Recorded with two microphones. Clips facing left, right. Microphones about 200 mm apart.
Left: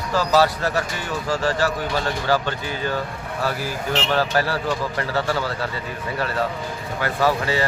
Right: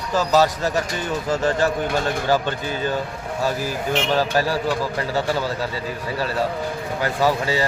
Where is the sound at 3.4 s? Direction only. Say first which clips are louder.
Right 2 dB; 15° right (ahead or behind).